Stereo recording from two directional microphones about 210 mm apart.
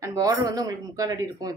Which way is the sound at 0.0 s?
15° right (ahead or behind).